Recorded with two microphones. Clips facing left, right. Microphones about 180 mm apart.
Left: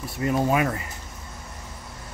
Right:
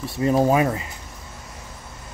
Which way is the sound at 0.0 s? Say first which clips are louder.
Right 5 dB; 30° right (ahead or behind).